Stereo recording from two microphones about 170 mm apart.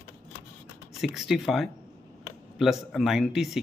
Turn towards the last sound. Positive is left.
turn(degrees=0)  # may be behind; listen again after turning